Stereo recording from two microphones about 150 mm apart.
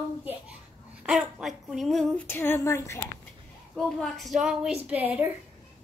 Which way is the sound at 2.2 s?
15° left (ahead or behind).